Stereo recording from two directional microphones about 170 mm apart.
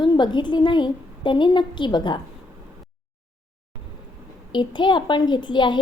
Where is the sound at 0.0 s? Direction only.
25° left (ahead or behind).